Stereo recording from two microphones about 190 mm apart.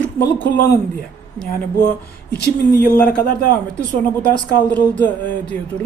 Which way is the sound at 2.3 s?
60° left (ahead or behind).